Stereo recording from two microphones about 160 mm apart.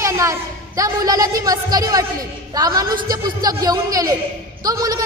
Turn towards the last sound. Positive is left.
turn(degrees=-25)  # may be behind; listen again after turning